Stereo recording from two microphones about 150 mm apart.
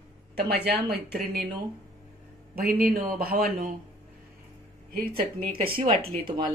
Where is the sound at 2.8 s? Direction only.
75° right (ahead or behind).